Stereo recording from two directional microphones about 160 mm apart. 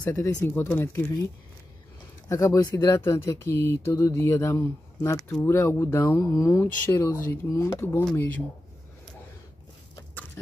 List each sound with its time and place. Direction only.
0.0 s speech: 15° left (ahead or behind)
2.2 s speech: 20° left (ahead or behind)